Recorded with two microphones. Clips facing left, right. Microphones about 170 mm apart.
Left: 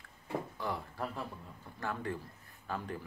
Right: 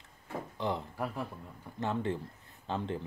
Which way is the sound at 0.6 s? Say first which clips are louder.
Right 4 dB; 20° right (ahead or behind).